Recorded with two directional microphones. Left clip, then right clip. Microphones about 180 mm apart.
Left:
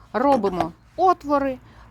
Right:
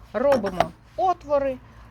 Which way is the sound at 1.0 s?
55° left (ahead or behind).